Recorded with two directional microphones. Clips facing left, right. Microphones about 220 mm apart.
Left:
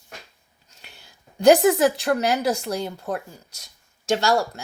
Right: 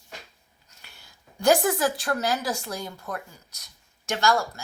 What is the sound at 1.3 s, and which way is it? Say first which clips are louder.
Speech: left 6 dB; 20° left (ahead or behind).